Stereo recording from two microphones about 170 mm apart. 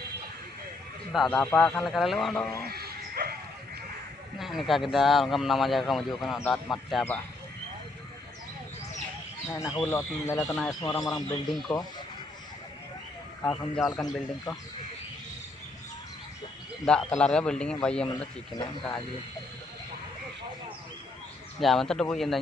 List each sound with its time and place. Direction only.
1.1 s a man's voice: centre (ahead or behind)
2.7 s dog: 65° right (ahead or behind)
4.4 s a man's voice: centre (ahead or behind)
9.5 s a man's voice: 20° left (ahead or behind)
11.4 s a man's voice: centre (ahead or behind)
13.4 s a man's voice: 5° left (ahead or behind)
16.8 s a man's voice: 5° left (ahead or behind)
18.5 s a man's voice: 30° left (ahead or behind)
21.5 s a man's voice: centre (ahead or behind)